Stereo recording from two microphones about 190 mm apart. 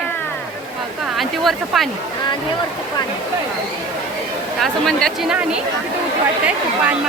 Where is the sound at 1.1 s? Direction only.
Centre (ahead or behind).